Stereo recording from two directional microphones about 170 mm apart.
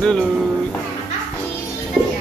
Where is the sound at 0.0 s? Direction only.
5° left (ahead or behind).